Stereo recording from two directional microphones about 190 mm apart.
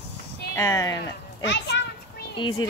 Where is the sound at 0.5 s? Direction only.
15° left (ahead or behind).